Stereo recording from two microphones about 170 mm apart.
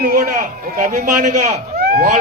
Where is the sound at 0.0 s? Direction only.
55° right (ahead or behind).